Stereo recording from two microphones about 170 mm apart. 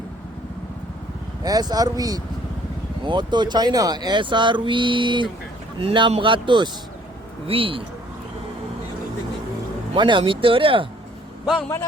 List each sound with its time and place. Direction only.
1.5 s speech: 20° right (ahead or behind)
9.9 s speech: 30° right (ahead or behind)